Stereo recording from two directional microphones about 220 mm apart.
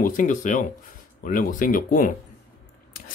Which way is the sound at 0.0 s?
35° left (ahead or behind).